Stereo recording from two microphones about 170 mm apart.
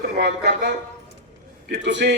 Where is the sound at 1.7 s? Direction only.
85° right.